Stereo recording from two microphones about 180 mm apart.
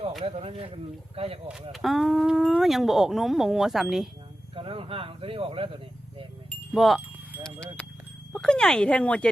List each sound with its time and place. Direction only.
0.3 s speech: 30° right (ahead or behind)
1.7 s speech: centre (ahead or behind)
4.5 s speech: 30° right (ahead or behind)
6.5 s wind chime: centre (ahead or behind)
8.3 s speech: 5° left (ahead or behind)